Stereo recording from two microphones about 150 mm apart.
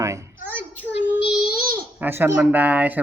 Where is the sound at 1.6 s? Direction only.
75° right (ahead or behind).